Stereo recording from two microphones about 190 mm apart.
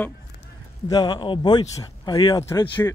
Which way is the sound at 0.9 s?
20° left (ahead or behind).